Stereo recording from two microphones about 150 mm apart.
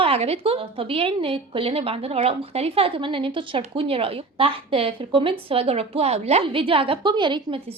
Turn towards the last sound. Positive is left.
turn(degrees=-30)  # may be behind; listen again after turning